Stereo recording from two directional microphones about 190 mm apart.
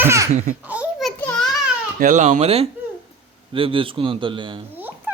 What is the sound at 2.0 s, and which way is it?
A man's voice, 40° right (ahead or behind).